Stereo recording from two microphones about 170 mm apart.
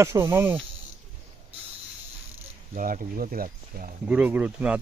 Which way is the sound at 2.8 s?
55° right (ahead or behind).